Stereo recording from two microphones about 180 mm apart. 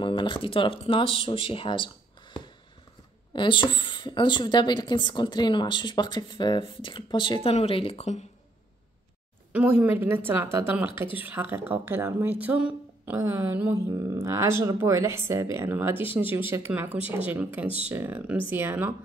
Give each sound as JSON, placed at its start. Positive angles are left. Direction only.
{"t": 0.0, "sound": "speech", "side_deg": 25}
{"t": 3.3, "sound": "speech", "side_deg": 25}
{"t": 9.5, "sound": "speech", "side_deg": -10}